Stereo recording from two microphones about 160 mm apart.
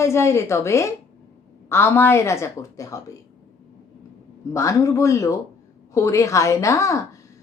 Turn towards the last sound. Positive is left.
turn(degrees=20)  # may be behind; listen again after turning